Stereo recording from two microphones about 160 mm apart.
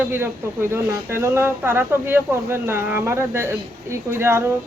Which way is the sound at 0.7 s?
15° right (ahead or behind).